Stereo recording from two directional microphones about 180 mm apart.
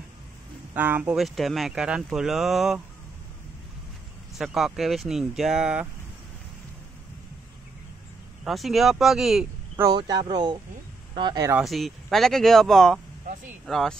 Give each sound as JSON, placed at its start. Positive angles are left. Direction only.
{"t": 0.7, "sound": "speech", "side_deg": -10}
{"t": 4.4, "sound": "speech", "side_deg": 0}
{"t": 8.5, "sound": "speech", "side_deg": 0}
{"t": 9.8, "sound": "speech", "side_deg": -20}
{"t": 11.5, "sound": "speech", "side_deg": 0}